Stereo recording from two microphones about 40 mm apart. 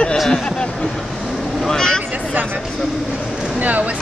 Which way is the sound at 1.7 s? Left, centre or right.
Centre.